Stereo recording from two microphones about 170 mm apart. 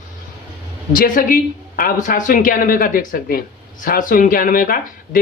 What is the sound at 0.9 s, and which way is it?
Speech, 55° left (ahead or behind).